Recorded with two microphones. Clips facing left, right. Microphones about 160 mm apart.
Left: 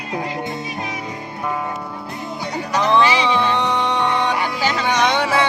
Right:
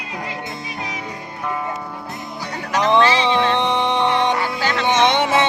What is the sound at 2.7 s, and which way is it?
Speech, 20° right (ahead or behind).